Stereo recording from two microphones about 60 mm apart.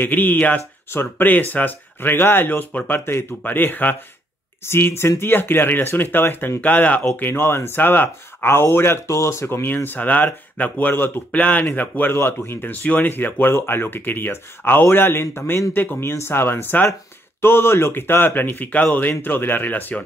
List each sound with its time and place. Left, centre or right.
0.0 s a man's voice: left
4.6 s speech: left
6.6 s a man's voice: left
7.2 s a man's voice: left